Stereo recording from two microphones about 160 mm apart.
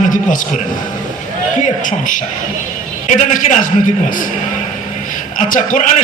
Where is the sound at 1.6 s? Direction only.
55° left (ahead or behind).